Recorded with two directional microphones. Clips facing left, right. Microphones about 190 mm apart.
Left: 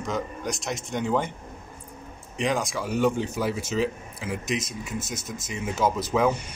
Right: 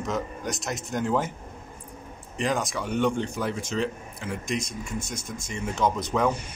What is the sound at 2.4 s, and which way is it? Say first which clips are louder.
A man's voice: left 1 dB; centre (ahead or behind).